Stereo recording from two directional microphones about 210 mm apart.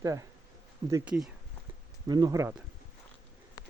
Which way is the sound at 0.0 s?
15° right (ahead or behind).